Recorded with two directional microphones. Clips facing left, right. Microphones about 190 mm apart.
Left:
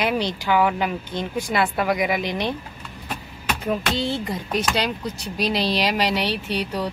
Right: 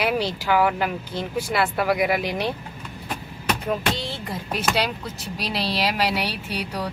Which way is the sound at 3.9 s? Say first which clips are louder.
Left 6 dB; centre (ahead or behind).